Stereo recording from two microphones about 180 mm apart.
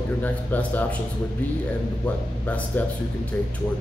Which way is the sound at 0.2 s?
10° left (ahead or behind).